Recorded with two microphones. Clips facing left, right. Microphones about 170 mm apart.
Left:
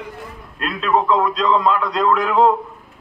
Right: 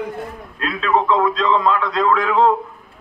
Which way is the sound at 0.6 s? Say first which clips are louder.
Even; centre (ahead or behind).